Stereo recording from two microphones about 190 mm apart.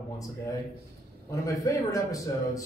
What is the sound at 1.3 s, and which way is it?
A man's voice, 15° left (ahead or behind).